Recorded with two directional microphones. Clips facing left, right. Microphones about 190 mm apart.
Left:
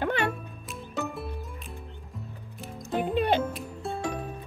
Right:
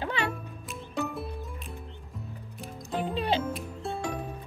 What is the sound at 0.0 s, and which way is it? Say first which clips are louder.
Music: left 4 dB; 55° left (ahead or behind).